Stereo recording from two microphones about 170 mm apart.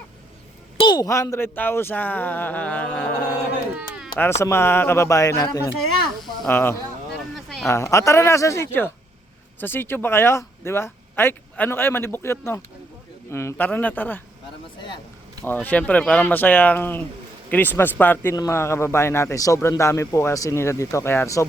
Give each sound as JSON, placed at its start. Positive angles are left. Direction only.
{"t": 0.8, "sound": "a man's voice", "side_deg": 25}
{"t": 3.7, "sound": "a sound", "side_deg": -5}
{"t": 4.2, "sound": "a man's voice", "side_deg": 15}
{"t": 6.5, "sound": "a man's voice", "side_deg": 10}
{"t": 7.3, "sound": "a sound", "side_deg": 0}
{"t": 7.7, "sound": "a man's voice", "side_deg": 15}
{"t": 15.4, "sound": "a man's voice", "side_deg": 10}